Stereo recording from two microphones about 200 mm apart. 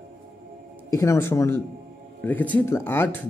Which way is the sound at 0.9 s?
15° left (ahead or behind).